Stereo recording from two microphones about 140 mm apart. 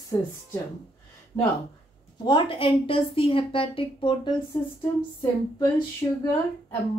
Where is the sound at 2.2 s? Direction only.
35° left (ahead or behind).